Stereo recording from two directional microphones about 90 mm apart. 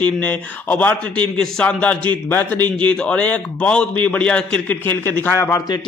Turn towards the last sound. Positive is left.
turn(degrees=20)  # may be behind; listen again after turning